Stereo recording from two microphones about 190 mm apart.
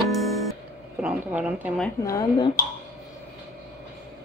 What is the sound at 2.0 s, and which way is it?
Speech, 15° left (ahead or behind).